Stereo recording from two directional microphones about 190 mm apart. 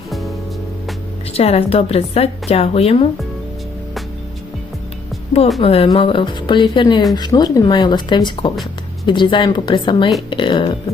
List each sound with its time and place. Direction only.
1.3 s a woman's voice: 30° left (ahead or behind)
5.5 s speech: 30° left (ahead or behind)